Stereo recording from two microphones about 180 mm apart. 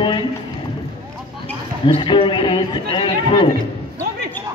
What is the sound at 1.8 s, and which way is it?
Speech, 25° left (ahead or behind).